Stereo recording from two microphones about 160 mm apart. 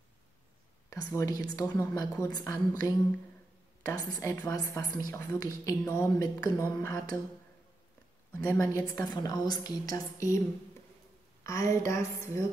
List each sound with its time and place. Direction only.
0.8 s a woman's voice: 20° left (ahead or behind)
3.8 s a woman's voice: 20° left (ahead or behind)
8.3 s a woman's voice: 10° left (ahead or behind)
8.5 s a woman's voice: 20° left (ahead or behind)
11.4 s a woman's voice: 20° left (ahead or behind)